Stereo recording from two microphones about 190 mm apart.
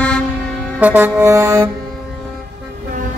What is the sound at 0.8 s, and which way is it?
Music, 10° right (ahead or behind).